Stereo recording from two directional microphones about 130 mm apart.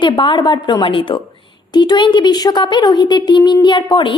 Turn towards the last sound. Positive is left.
turn(degrees=40)  # may be behind; listen again after turning